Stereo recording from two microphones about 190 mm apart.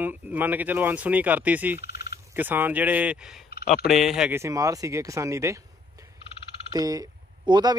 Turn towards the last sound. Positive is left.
turn(degrees=-20)  # may be behind; listen again after turning